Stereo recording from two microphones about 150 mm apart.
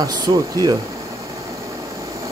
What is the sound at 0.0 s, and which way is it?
Speech, 25° right (ahead or behind).